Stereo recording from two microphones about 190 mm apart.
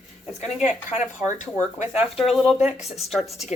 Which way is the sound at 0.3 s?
40° left (ahead or behind).